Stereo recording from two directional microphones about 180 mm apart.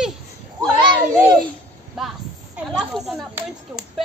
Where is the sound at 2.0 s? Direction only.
Centre (ahead or behind).